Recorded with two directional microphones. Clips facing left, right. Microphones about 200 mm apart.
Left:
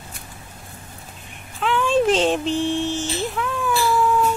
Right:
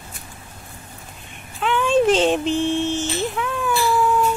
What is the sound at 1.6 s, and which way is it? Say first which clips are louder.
Speech: right 1 dB; centre (ahead or behind).